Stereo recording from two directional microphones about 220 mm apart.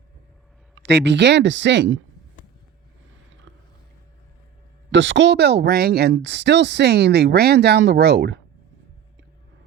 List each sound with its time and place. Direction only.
0.8 s speech: 50° right (ahead or behind)
3.5 s a sound: 55° right (ahead or behind)
4.9 s speech: 55° right (ahead or behind)